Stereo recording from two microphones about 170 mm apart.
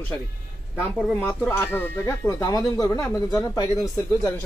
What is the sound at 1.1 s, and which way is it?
Speech, 10° left (ahead or behind).